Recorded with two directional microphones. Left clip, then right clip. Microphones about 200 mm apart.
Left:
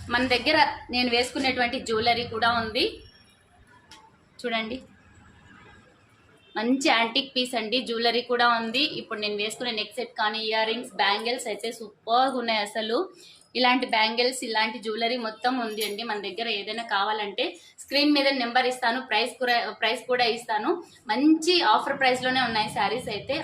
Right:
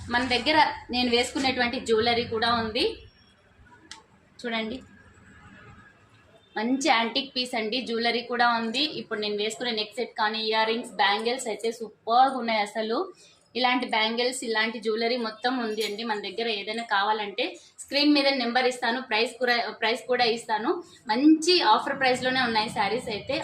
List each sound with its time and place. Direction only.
0.1 s a woman's voice: 20° left (ahead or behind)
4.4 s a woman's voice: 20° left (ahead or behind)
6.5 s a woman's voice: 20° left (ahead or behind)